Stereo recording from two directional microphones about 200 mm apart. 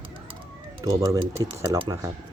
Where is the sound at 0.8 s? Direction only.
20° right (ahead or behind).